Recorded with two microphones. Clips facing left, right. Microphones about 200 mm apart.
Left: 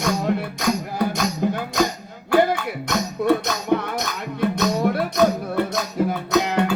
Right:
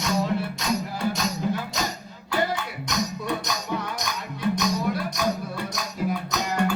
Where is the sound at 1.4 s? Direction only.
55° left (ahead or behind).